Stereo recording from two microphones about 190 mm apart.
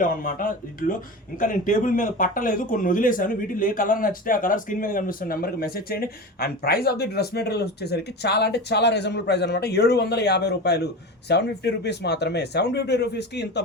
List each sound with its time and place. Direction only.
0.0 s speech: 45° left (ahead or behind)